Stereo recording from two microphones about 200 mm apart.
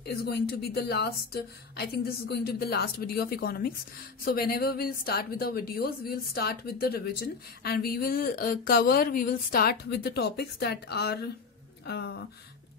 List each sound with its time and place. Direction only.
0.0 s speech: 50° left (ahead or behind)